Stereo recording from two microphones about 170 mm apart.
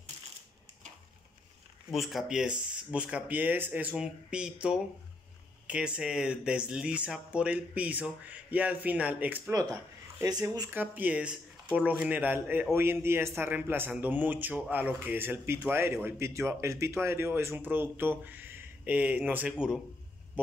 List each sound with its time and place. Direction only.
1.9 s a man's voice: centre (ahead or behind)
10.2 s speech: 20° right (ahead or behind)
10.7 s a man's voice: 10° right (ahead or behind)